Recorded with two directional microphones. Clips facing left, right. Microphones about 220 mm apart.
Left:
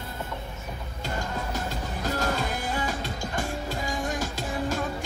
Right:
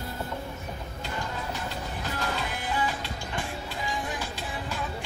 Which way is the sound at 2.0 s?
45° left (ahead or behind).